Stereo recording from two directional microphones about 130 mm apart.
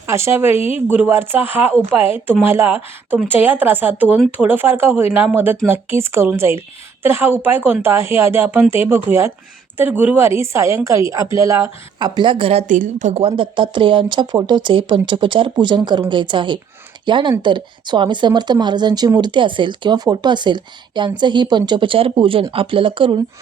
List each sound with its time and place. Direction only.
0.1 s a woman's voice: 20° right (ahead or behind)
11.9 s speech: 35° right (ahead or behind)
12.6 s speech: 85° right; by 23.2 s 40° right (ahead or behind)